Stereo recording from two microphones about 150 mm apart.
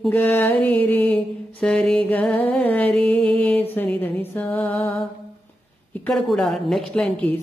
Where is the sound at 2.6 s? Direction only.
10° left (ahead or behind).